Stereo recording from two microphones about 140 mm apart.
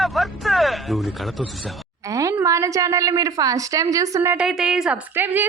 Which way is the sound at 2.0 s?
25° right (ahead or behind).